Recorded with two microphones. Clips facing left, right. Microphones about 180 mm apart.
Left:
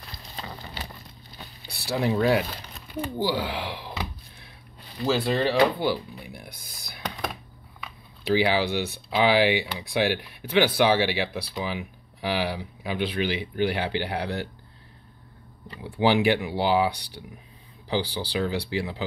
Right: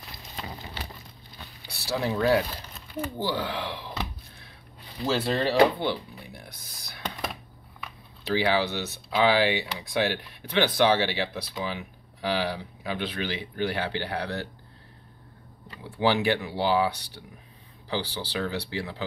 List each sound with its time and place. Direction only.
1.7 s speech: 55° left (ahead or behind)
2.0 s speech: 20° left (ahead or behind)
5.0 s speech: centre (ahead or behind)
15.8 s speech: 15° left (ahead or behind)